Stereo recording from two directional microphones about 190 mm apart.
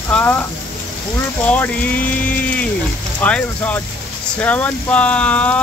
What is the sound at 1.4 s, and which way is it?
Speech, 10° left (ahead or behind).